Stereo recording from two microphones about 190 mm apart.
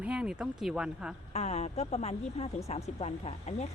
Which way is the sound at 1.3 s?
35° left (ahead or behind).